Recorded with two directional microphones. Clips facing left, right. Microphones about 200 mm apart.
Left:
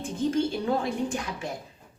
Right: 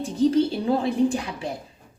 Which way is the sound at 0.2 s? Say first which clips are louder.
Right 6 dB; 35° right (ahead or behind).